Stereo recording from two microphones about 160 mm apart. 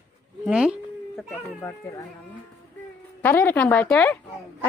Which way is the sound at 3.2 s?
15° left (ahead or behind).